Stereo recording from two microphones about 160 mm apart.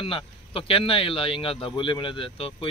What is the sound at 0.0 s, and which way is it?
Speech, 35° left (ahead or behind).